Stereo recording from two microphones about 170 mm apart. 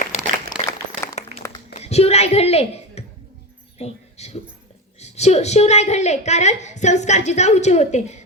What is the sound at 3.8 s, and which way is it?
Speech, 40° left (ahead or behind).